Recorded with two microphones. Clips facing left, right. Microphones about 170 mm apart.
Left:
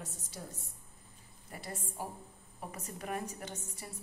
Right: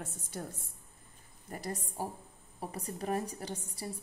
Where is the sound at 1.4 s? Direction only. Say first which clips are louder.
Right 5 dB; 40° right (ahead or behind).